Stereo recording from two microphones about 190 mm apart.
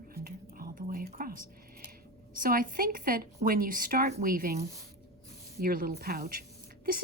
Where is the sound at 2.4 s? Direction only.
50° right (ahead or behind).